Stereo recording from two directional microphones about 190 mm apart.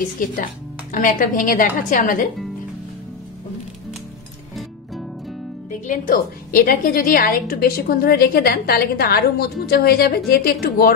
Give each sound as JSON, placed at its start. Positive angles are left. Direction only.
{"t": 0.2, "sound": "a woman's voice", "side_deg": 45}
{"t": 5.9, "sound": "a woman's voice", "side_deg": 45}